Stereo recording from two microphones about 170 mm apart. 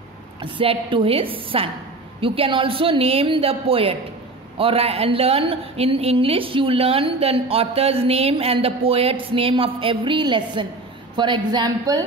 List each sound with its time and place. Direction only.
0.4 s a woman's voice: 30° right (ahead or behind)